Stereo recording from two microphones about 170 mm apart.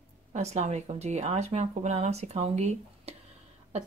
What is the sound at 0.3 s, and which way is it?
Speech, 40° right (ahead or behind).